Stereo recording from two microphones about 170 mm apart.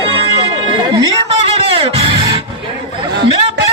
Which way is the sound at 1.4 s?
35° right (ahead or behind).